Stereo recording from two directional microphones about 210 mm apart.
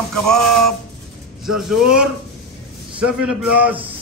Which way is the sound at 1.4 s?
Centre (ahead or behind).